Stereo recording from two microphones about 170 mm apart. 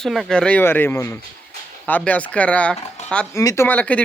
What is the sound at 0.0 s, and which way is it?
Speech, centre (ahead or behind).